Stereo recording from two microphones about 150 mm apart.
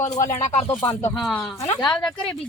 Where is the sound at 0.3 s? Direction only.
55° left (ahead or behind).